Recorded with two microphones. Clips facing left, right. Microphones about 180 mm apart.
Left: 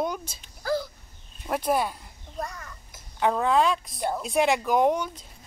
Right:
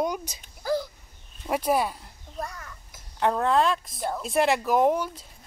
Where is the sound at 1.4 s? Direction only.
5° right (ahead or behind).